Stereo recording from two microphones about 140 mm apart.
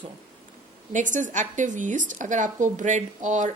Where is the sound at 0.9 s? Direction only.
65° right (ahead or behind).